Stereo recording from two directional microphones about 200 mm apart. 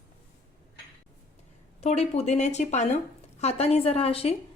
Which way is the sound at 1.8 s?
30° left (ahead or behind).